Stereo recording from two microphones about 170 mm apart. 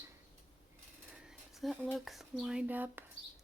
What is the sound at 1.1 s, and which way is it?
Speech, 5° right (ahead or behind).